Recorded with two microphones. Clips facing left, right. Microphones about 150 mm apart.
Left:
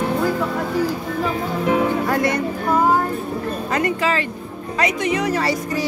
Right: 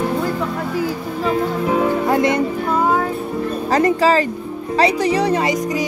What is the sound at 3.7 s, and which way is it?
Speech, 35° right (ahead or behind).